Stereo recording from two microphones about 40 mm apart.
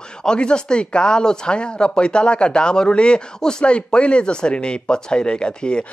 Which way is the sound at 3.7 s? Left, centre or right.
Left.